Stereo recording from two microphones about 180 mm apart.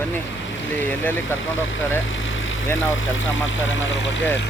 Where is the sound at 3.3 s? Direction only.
90° left.